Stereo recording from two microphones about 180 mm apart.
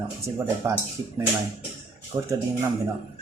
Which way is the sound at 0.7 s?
15° right (ahead or behind).